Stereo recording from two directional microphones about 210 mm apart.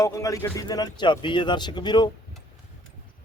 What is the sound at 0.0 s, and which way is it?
Speech, 15° left (ahead or behind).